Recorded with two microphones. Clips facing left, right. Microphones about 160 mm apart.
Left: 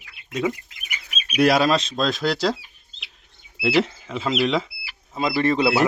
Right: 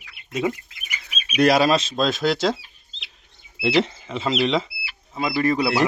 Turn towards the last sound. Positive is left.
turn(degrees=25)  # may be behind; listen again after turning